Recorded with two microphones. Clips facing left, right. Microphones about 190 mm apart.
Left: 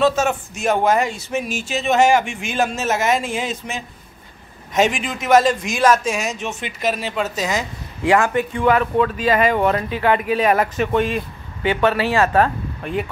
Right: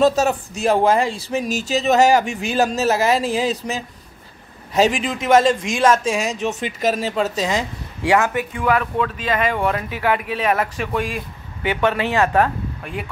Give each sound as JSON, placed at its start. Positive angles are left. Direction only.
{"t": 0.0, "sound": "speech", "side_deg": -35}
{"t": 8.0, "sound": "speech", "side_deg": -15}
{"t": 9.1, "sound": "speech", "side_deg": 5}
{"t": 10.2, "sound": "speech", "side_deg": 5}
{"t": 11.0, "sound": "speech", "side_deg": -10}